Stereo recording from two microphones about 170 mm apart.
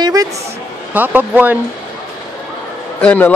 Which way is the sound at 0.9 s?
10° right (ahead or behind).